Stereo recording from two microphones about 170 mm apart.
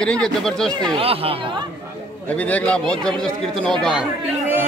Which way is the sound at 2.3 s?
10° left (ahead or behind).